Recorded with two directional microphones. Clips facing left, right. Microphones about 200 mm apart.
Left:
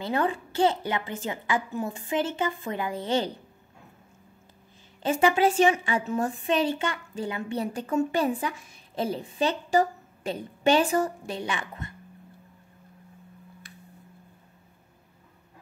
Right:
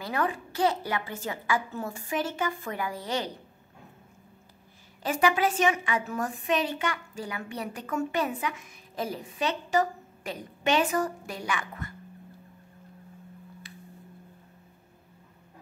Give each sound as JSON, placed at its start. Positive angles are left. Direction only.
{"t": 0.0, "sound": "a woman's voice", "side_deg": 25}
{"t": 5.0, "sound": "a woman's voice", "side_deg": 25}